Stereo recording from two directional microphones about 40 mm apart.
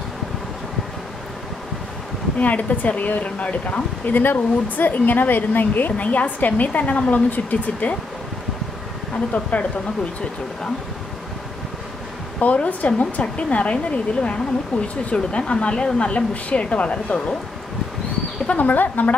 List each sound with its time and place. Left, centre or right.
2.3 s speech: left
4.0 s speech: left
9.3 s speech: left
12.4 s a woman's voice: left
18.6 s speech: left